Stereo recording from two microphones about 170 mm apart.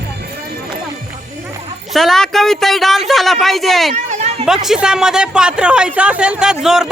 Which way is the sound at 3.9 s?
45° right (ahead or behind).